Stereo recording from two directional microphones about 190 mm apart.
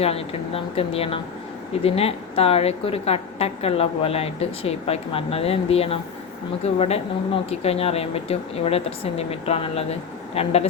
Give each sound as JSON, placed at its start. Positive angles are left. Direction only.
{"t": 0.0, "sound": "a woman's voice", "side_deg": 30}